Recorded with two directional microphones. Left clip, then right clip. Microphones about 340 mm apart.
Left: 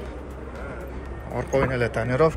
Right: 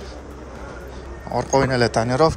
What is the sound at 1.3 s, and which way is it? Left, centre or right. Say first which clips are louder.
Speech: right 5 dB; centre.